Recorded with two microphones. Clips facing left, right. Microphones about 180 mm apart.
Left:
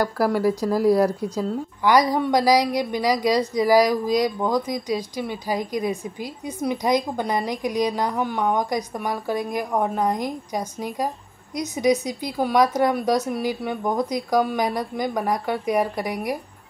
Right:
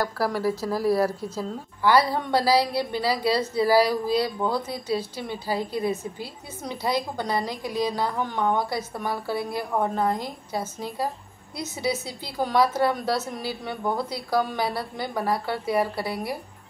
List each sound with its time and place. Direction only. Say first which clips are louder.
0.0 s speech: left 4 dB; 15° left (ahead or behind)